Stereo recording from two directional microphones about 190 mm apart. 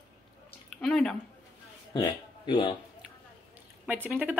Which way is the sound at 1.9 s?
25° left (ahead or behind).